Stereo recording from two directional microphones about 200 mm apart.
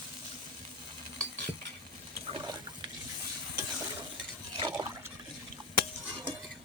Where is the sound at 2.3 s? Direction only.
25° right (ahead or behind).